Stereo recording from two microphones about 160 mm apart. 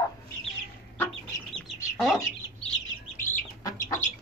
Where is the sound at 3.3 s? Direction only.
20° left (ahead or behind).